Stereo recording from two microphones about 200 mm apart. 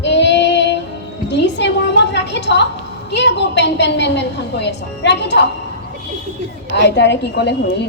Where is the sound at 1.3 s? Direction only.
60° left (ahead or behind).